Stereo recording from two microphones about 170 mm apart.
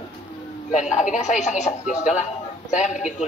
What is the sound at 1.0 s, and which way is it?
Speech, 45° left (ahead or behind).